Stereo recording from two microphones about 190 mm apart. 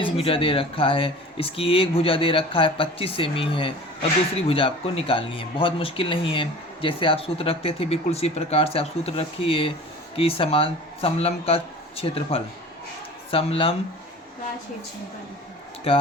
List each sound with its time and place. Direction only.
0.0 s speech: 30° left (ahead or behind)